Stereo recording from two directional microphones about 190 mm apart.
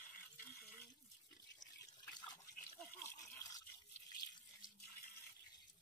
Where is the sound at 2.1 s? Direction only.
20° left (ahead or behind).